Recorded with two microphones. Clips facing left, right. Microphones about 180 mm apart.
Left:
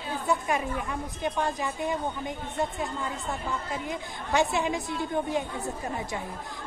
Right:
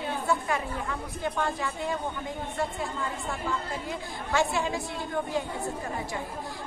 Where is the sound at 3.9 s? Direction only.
20° left (ahead or behind).